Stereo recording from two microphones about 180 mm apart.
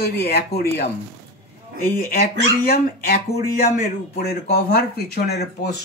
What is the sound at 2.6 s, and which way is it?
Speech, 60° left (ahead or behind).